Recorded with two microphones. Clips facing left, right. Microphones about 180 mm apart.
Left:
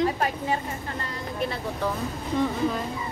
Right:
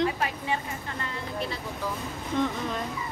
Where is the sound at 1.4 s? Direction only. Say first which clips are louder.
Left 9 dB; 60° left (ahead or behind).